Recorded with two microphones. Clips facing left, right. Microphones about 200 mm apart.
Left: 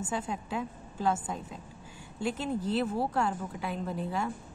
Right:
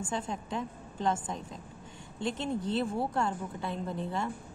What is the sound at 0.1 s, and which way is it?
A woman's voice, 5° left (ahead or behind).